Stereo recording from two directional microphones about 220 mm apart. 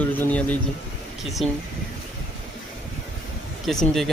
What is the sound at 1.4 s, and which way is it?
Speech, 25° left (ahead or behind).